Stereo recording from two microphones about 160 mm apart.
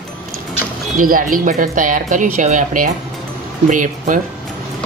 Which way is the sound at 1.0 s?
60° right (ahead or behind).